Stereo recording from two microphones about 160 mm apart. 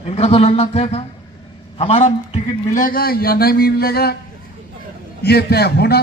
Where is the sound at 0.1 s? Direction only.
35° left (ahead or behind).